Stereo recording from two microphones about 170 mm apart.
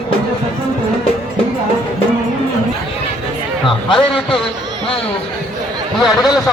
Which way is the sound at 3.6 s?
30° left (ahead or behind).